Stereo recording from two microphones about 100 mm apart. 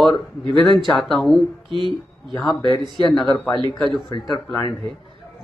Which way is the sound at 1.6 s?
55° right (ahead or behind).